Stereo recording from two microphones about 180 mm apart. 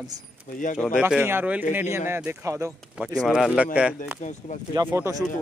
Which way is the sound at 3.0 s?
5° right (ahead or behind).